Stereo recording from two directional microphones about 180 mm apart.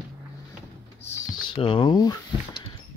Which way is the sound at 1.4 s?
25° left (ahead or behind).